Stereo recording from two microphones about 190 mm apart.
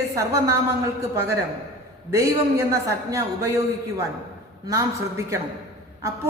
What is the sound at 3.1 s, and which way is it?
Speech, 15° right (ahead or behind).